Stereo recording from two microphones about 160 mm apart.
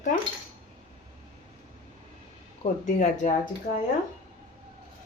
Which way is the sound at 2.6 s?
50° left (ahead or behind).